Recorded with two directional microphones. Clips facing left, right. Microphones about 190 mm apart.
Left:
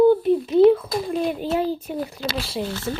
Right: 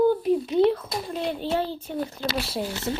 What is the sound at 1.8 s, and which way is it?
Speech, 15° left (ahead or behind).